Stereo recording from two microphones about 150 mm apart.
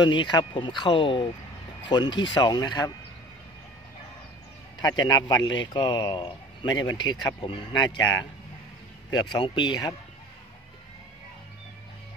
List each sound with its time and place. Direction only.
0.0 s a man's voice: 30° left (ahead or behind)
4.8 s a man's voice: 25° left (ahead or behind)
9.2 s speech: 30° left (ahead or behind)